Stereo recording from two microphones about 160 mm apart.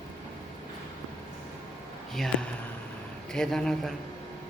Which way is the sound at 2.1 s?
Centre (ahead or behind).